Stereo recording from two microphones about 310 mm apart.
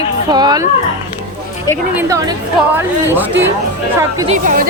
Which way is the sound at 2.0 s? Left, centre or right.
Centre.